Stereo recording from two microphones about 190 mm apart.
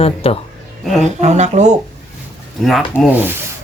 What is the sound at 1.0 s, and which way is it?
Speech, 35° right (ahead or behind).